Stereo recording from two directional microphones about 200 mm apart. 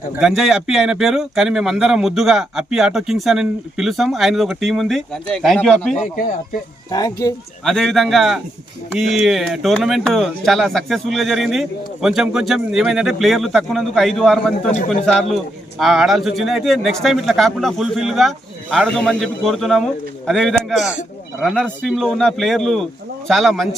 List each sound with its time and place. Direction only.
0.2 s speech: centre (ahead or behind)
6.9 s speech: 15° left (ahead or behind)
7.6 s speech: centre (ahead or behind)